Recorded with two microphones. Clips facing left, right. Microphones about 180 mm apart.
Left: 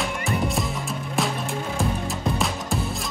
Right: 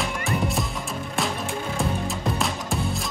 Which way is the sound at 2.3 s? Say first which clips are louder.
Left 1 dB; centre (ahead or behind).